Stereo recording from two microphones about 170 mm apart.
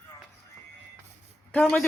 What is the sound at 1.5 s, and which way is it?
Speech, 5° left (ahead or behind).